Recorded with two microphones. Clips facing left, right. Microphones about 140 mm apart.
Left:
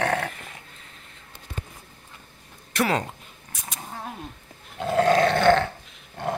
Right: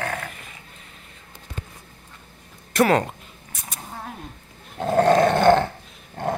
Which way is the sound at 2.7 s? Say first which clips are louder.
Right 6 dB; 40° right (ahead or behind).